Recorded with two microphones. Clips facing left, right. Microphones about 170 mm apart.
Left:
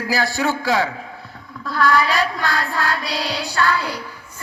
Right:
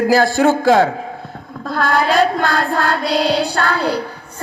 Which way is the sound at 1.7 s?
55° right (ahead or behind).